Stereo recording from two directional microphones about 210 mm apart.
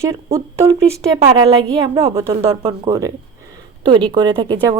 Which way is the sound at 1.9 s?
15° right (ahead or behind).